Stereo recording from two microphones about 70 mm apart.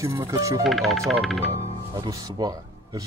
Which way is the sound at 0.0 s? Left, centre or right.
Right.